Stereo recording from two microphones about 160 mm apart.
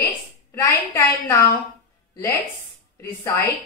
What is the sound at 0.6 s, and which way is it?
Speech, 20° left (ahead or behind).